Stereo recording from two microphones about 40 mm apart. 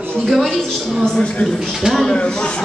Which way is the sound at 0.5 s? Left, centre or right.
Centre.